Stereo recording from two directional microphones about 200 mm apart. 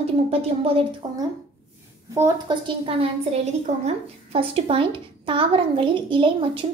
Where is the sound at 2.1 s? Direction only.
20° right (ahead or behind).